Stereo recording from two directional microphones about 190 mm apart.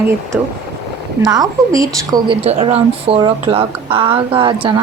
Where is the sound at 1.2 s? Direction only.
20° right (ahead or behind).